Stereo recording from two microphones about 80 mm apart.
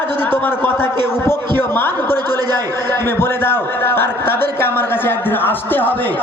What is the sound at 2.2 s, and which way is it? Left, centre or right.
Speech, right.